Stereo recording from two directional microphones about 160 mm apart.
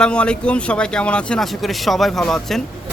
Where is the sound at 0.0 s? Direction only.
5° left (ahead or behind).